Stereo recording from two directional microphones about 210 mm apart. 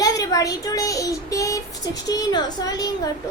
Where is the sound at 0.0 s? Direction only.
15° left (ahead or behind).